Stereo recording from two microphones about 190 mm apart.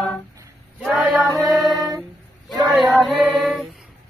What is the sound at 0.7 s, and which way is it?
Female singing, 5° right (ahead or behind).